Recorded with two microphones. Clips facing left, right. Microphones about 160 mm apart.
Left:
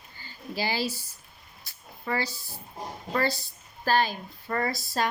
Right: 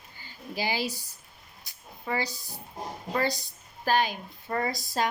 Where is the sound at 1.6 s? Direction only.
15° right (ahead or behind).